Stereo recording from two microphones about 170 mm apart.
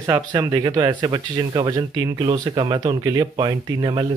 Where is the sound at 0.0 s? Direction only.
20° right (ahead or behind).